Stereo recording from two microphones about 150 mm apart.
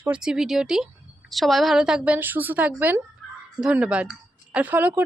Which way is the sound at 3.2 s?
Centre (ahead or behind).